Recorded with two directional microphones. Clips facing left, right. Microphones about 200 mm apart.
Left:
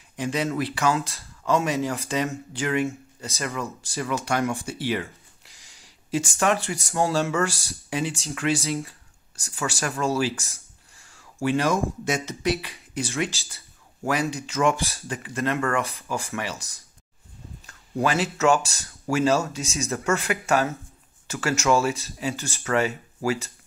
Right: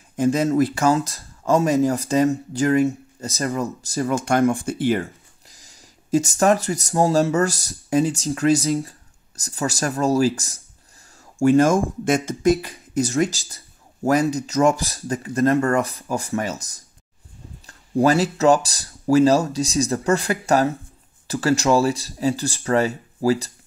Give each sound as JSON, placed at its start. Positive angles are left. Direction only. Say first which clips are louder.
{"t": 0.1, "sound": "speech", "louder": "right 8 dB", "side_deg": -45}
{"t": 17.6, "sound": "speech", "louder": "right 7 dB", "side_deg": -35}